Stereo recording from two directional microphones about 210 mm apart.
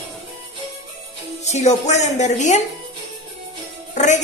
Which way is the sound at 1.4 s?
35° left (ahead or behind).